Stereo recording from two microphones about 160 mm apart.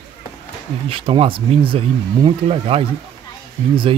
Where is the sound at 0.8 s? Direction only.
35° right (ahead or behind).